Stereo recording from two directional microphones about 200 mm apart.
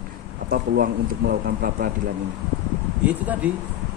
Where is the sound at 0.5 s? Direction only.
50° right (ahead or behind).